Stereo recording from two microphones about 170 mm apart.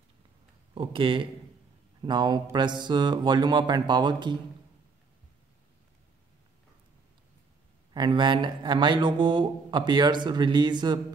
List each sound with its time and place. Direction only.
0.7 s speech: 30° right (ahead or behind)
7.9 s speech: 25° right (ahead or behind)